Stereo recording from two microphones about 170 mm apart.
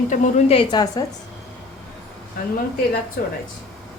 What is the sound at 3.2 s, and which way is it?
Speech, 60° left (ahead or behind).